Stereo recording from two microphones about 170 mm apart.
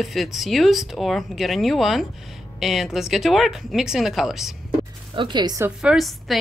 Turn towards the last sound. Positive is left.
turn(degrees=0)  # may be behind; listen again after turning